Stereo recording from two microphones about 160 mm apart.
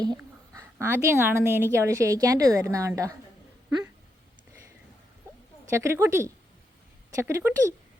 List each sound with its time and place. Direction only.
0.0 s a woman's voice: 20° right (ahead or behind)
5.7 s a woman's voice: 15° right (ahead or behind)